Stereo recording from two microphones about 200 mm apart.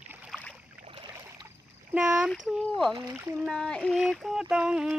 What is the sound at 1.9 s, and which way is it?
Speech, 5° right (ahead or behind).